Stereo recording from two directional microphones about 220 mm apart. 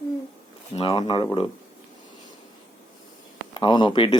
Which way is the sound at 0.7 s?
25° left (ahead or behind).